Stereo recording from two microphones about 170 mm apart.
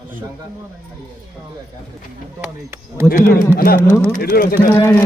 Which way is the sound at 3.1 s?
55° left (ahead or behind).